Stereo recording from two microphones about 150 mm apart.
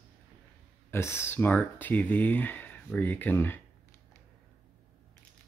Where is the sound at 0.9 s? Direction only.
15° left (ahead or behind).